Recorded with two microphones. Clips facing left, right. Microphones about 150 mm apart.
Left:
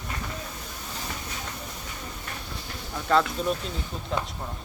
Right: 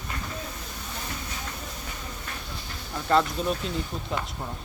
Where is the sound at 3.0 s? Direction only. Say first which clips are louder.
Even; centre (ahead or behind).